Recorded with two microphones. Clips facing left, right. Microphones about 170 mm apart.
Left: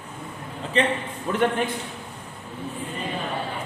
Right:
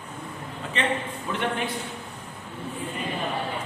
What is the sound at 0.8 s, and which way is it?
Speech, 35° left (ahead or behind).